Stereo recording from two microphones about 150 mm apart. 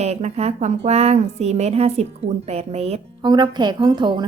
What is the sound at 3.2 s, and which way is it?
A woman's voice, 30° right (ahead or behind).